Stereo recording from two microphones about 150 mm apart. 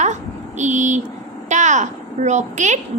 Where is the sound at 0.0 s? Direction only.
50° right (ahead or behind).